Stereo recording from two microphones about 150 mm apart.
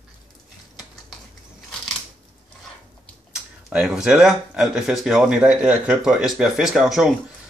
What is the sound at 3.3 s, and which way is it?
Speech, 5° right (ahead or behind).